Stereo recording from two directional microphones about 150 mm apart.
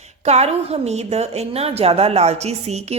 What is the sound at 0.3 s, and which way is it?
A woman's voice, 45° right (ahead or behind).